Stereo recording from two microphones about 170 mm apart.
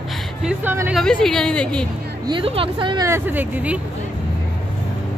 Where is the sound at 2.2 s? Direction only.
30° right (ahead or behind).